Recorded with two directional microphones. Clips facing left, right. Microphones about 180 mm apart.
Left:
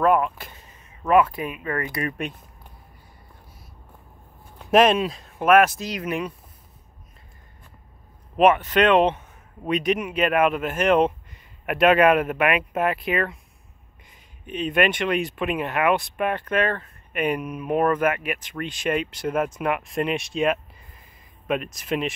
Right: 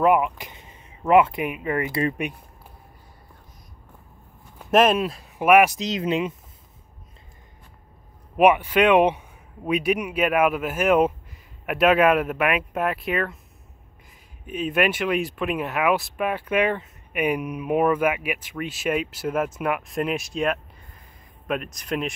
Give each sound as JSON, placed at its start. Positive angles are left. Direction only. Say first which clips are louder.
{"t": 0.0, "sound": "a sound", "louder": "right 1 dB", "side_deg": -15}
{"t": 4.6, "sound": "speech", "louder": "left 1 dB", "side_deg": -5}
{"t": 8.4, "sound": "speech", "louder": "even", "side_deg": -10}